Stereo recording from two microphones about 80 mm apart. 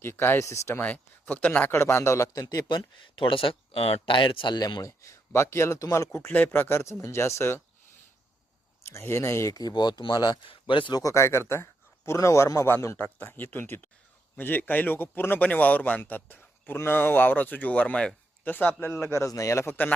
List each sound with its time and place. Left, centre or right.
0.0 s speech: left
0.8 s speech: left
1.8 s a man's voice: left
4.8 s speech: left
6.1 s speech: left
8.9 s speech: left
9.6 s speech: left
10.9 s a man's voice: left
13.0 s speech: left